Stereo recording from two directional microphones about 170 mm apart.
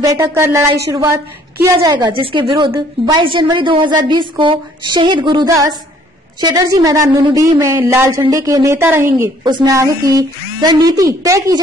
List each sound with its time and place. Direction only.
0.0 s a woman's voice: 15° right (ahead or behind)